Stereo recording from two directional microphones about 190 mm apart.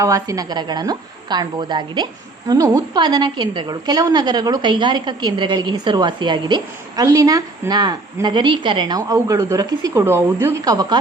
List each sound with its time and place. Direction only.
0.0 s a woman's voice: 15° right (ahead or behind)